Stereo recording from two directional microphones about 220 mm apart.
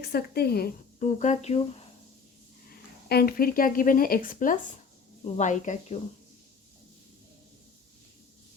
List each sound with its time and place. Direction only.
0.0 s a woman's voice: 45° left (ahead or behind)
2.6 s a woman's voice: 45° left (ahead or behind)